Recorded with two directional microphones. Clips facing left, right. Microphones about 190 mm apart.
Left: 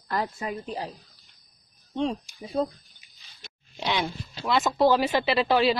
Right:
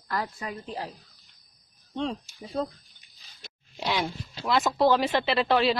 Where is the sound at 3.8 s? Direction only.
5° right (ahead or behind).